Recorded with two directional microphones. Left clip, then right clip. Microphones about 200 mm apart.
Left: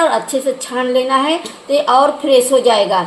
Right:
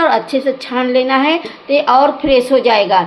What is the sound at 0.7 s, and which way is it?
A woman's voice, 5° right (ahead or behind).